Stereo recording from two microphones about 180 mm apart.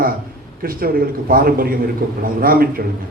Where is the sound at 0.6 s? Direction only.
55° right (ahead or behind).